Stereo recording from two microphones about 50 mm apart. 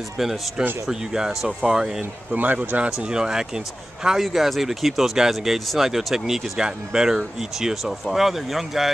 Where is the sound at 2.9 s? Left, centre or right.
Centre.